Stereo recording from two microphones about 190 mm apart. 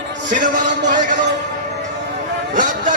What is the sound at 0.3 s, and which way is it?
Speech, 40° right (ahead or behind).